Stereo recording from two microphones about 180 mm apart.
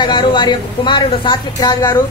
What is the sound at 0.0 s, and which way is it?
A woman's voice, 25° left (ahead or behind).